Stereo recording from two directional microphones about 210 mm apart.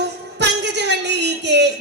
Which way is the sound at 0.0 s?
55° right (ahead or behind).